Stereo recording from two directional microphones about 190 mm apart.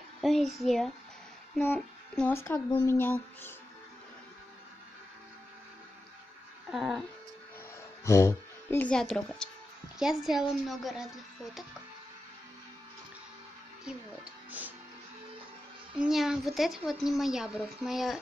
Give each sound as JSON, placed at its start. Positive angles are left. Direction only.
{"t": 0.2, "sound": "a child's voice", "side_deg": 0}
{"t": 6.7, "sound": "a woman's voice", "side_deg": 0}
{"t": 8.0, "sound": "a woman's voice", "side_deg": 15}
{"t": 15.9, "sound": "a woman's voice", "side_deg": -5}